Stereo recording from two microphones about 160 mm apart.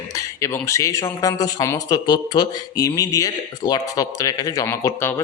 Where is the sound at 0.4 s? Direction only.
15° left (ahead or behind).